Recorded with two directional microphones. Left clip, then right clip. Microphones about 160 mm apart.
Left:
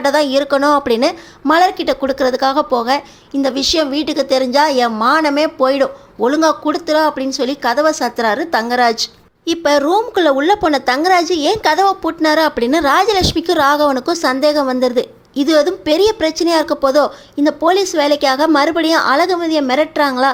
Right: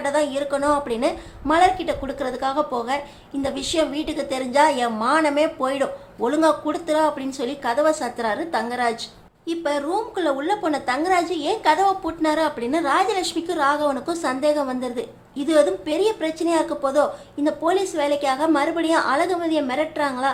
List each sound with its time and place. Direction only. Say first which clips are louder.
0.0 s a woman's voice: left 8 dB; 40° left (ahead or behind)